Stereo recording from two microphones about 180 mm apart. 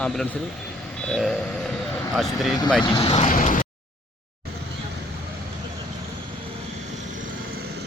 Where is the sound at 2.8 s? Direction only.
30° left (ahead or behind); by 3.7 s 45° left (ahead or behind).